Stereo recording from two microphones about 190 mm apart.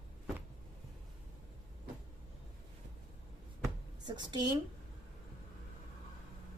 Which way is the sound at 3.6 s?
20° right (ahead or behind).